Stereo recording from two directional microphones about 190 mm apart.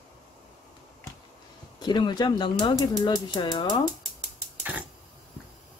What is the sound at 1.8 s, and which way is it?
Speech, 20° left (ahead or behind).